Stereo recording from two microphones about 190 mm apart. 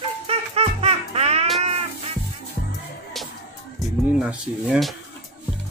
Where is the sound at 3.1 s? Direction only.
Centre (ahead or behind).